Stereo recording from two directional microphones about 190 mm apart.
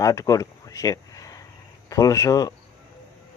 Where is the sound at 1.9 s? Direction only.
20° left (ahead or behind).